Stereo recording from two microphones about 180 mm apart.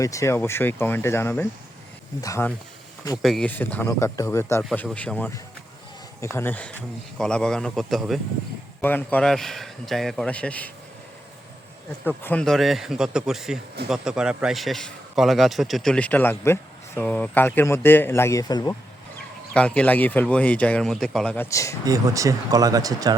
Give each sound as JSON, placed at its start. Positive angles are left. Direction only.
{"t": 0.0, "sound": "a man's voice", "side_deg": 15}
{"t": 3.2, "sound": "a man's voice", "side_deg": 0}
{"t": 12.0, "sound": "a man's voice", "side_deg": 10}
{"t": 19.5, "sound": "a man's voice", "side_deg": 5}
{"t": 21.8, "sound": "speech", "side_deg": -20}